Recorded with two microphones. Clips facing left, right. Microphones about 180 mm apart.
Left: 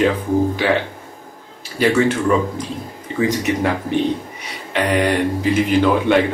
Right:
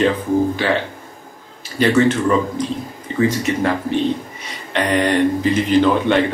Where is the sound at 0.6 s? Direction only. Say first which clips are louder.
Left 1 dB; 10° left (ahead or behind).